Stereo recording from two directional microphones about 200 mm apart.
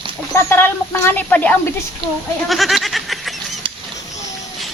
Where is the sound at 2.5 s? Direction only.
Centre (ahead or behind).